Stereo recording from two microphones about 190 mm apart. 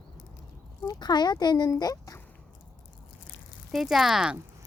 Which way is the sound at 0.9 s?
20° left (ahead or behind).